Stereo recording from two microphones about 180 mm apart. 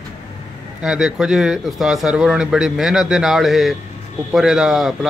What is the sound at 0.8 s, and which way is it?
Speech, centre (ahead or behind).